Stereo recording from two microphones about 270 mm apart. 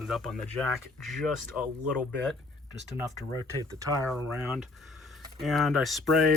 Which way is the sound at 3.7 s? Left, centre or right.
Centre.